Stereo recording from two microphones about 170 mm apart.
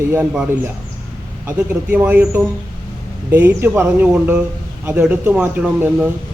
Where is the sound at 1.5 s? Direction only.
10° right (ahead or behind).